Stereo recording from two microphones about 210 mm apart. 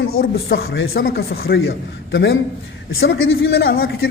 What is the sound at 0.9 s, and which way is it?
Speech, 45° left (ahead or behind).